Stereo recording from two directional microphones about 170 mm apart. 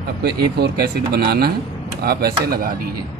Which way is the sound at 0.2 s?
75° right (ahead or behind).